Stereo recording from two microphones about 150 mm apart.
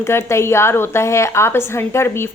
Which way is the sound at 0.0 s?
15° left (ahead or behind).